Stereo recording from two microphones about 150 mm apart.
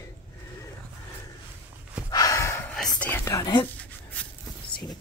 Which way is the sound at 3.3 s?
25° left (ahead or behind).